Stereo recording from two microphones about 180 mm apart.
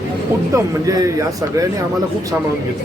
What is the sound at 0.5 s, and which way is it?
Speech, 20° right (ahead or behind).